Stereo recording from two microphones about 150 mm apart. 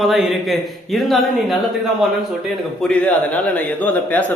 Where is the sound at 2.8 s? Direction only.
10° left (ahead or behind).